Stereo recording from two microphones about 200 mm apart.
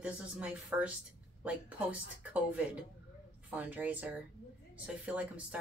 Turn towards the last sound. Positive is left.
turn(degrees=-5)  # may be behind; listen again after turning